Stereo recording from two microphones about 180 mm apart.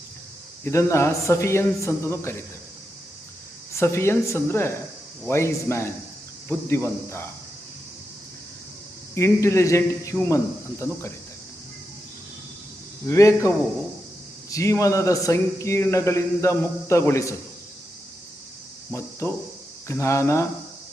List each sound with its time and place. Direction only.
0.6 s a man's voice: 15° left (ahead or behind)
3.8 s a man's voice: 15° left (ahead or behind)
9.1 s a man's voice: 15° left (ahead or behind)
13.1 s a man's voice: 15° left (ahead or behind)
14.5 s a man's voice: 15° left (ahead or behind)
18.9 s a man's voice: 15° left (ahead or behind)